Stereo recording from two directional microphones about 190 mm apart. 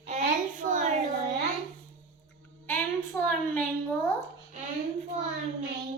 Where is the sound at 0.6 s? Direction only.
40° right (ahead or behind).